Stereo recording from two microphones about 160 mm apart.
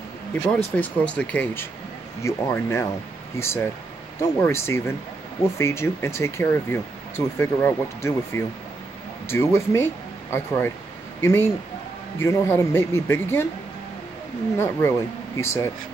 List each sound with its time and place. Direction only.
0.5 s speech: 5° left (ahead or behind)
11.1 s speech: 15° left (ahead or behind)
14.6 s speech: 15° left (ahead or behind)